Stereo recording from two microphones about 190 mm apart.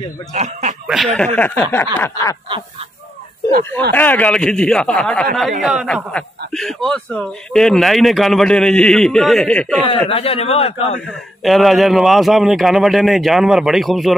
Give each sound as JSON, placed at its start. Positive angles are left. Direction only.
{"t": 0.3, "sound": "speech", "side_deg": -40}
{"t": 0.8, "sound": "speech", "side_deg": 0}
{"t": 3.9, "sound": "speech", "side_deg": 10}
{"t": 9.8, "sound": "a man's voice", "side_deg": 30}
{"t": 11.1, "sound": "speech", "side_deg": 0}